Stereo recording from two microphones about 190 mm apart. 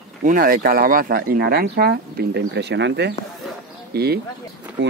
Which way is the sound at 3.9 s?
55° right (ahead or behind).